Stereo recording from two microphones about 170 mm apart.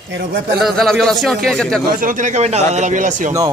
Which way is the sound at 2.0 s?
45° right (ahead or behind).